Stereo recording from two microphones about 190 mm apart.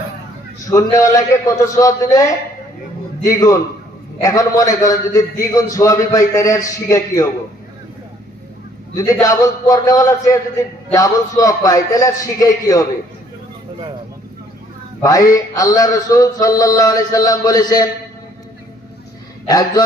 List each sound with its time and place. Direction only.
0.7 s a man's voice: 15° left (ahead or behind)
3.2 s a man's voice: 15° left (ahead or behind)
9.2 s mantra: 20° left (ahead or behind)
15.0 s mantra: 20° left (ahead or behind)
19.5 s mantra: 20° left (ahead or behind)